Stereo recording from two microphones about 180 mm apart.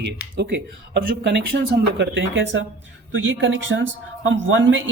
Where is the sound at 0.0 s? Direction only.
80° right.